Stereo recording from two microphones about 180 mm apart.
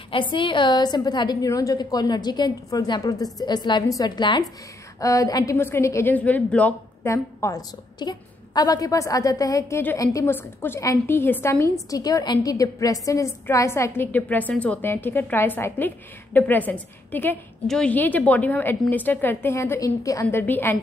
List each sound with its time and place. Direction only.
0.1 s a woman's voice: 25° left (ahead or behind); by 20.7 s 10° left (ahead or behind)